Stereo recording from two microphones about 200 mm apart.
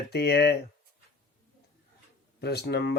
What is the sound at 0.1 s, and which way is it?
Speech, 55° left (ahead or behind).